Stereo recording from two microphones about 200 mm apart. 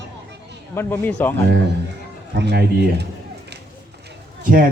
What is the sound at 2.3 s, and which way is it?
Speech, 55° right (ahead or behind).